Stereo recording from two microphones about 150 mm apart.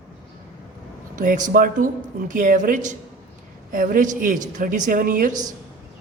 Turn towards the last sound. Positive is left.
turn(degrees=-65)  # may be behind; listen again after turning